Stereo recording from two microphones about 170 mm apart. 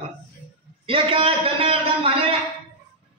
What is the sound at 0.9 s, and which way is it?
A man's voice, 30° right (ahead or behind).